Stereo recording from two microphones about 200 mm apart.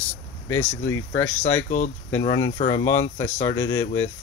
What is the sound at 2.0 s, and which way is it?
Speech, 15° left (ahead or behind).